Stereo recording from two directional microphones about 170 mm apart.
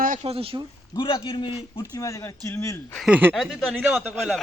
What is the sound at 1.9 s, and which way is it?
Speech, 20° left (ahead or behind).